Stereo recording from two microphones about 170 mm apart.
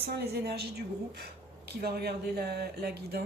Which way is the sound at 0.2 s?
70° right (ahead or behind).